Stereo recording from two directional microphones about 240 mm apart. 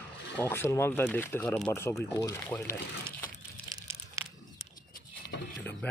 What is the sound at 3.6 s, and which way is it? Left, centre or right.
Crumpling, centre.